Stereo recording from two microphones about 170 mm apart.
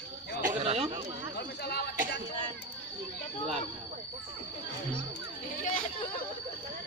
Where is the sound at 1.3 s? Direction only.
70° left (ahead or behind).